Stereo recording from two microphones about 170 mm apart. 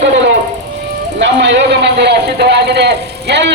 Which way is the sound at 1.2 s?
90° right.